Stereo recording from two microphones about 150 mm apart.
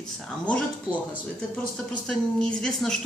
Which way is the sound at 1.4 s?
5° left (ahead or behind).